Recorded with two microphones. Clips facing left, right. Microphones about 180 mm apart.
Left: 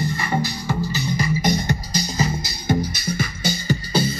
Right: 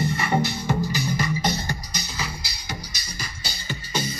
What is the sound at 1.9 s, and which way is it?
Music, 40° left (ahead or behind).